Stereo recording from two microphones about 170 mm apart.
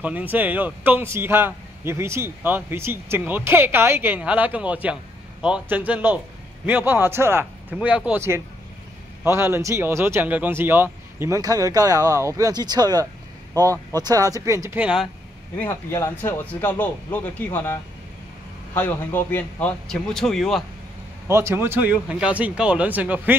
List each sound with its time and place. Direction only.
0.0 s speech: 10° right (ahead or behind)
15.5 s speech: 10° left (ahead or behind)
18.8 s a man's voice: 10° left (ahead or behind)
21.3 s speech: 15° right (ahead or behind)